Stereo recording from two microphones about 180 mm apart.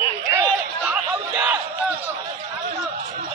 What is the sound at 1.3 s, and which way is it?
Crowd, 10° right (ahead or behind).